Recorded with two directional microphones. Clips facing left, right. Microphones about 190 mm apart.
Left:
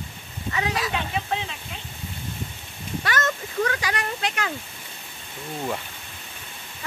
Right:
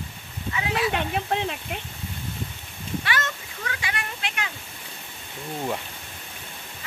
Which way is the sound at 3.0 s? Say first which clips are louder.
Left 8 dB; 45° left (ahead or behind).